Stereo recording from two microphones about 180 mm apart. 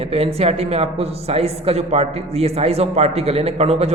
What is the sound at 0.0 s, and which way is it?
A woman's voice, 35° right (ahead or behind).